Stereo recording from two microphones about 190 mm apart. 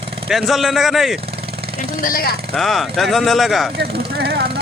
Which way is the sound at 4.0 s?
55° right (ahead or behind).